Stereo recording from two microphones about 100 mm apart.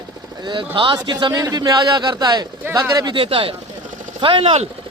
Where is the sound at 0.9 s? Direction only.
45° right (ahead or behind).